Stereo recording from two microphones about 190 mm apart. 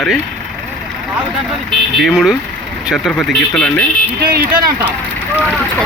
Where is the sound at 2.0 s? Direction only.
5° right (ahead or behind).